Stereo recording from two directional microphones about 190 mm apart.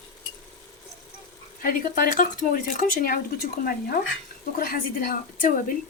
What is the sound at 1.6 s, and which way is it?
Speech, 50° left (ahead or behind).